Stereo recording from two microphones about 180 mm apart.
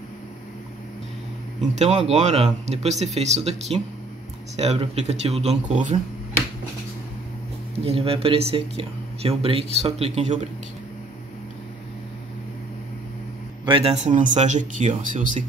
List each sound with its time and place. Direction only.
1.6 s speech: 40° right (ahead or behind)
7.8 s speech: 35° right (ahead or behind)
13.7 s speech: 30° right (ahead or behind)